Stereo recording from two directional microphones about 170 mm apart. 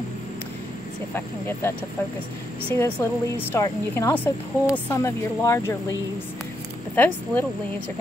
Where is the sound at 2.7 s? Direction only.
15° left (ahead or behind).